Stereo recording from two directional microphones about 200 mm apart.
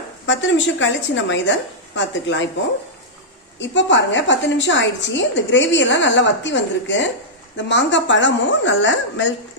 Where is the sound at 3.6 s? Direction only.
65° left (ahead or behind).